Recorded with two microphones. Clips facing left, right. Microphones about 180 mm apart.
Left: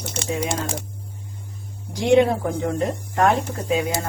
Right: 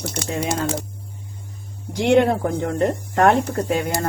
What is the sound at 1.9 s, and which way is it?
Speech, 65° right (ahead or behind).